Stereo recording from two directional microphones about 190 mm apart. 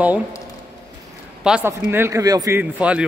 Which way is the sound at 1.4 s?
10° right (ahead or behind).